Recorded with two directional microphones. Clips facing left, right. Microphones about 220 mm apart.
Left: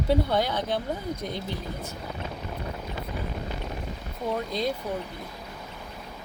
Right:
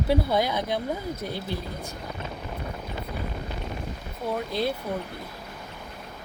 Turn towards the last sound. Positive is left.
turn(degrees=-5)  # may be behind; listen again after turning